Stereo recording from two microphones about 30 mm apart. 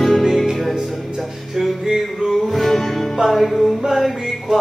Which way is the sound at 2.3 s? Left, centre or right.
Centre.